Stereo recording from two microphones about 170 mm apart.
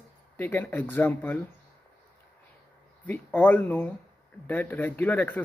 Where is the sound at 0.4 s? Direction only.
10° left (ahead or behind).